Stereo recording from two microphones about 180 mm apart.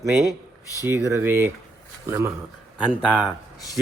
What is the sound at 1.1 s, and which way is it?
A man's voice, 15° right (ahead or behind).